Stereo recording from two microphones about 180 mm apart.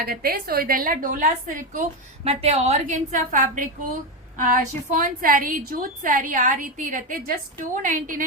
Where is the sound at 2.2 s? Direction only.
35° right (ahead or behind).